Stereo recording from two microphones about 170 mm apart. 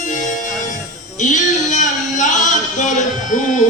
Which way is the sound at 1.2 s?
45° left (ahead or behind).